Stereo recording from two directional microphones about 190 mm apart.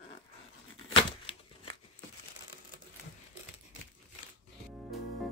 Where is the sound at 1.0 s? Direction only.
30° left (ahead or behind).